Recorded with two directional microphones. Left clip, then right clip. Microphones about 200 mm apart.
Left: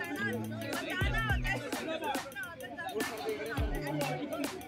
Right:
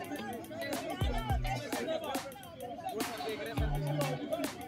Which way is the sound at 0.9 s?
20° left (ahead or behind).